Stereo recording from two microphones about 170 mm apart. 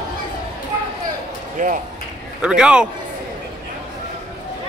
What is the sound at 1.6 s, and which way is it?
Speech, 50° right (ahead or behind).